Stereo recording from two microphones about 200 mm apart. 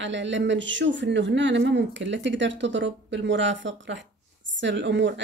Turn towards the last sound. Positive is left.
turn(degrees=-65)  # may be behind; listen again after turning